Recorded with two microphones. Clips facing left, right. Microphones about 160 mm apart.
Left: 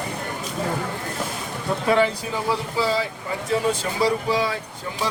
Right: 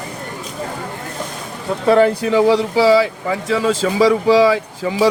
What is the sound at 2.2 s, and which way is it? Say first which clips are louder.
Speech: right 12 dB; 90° right.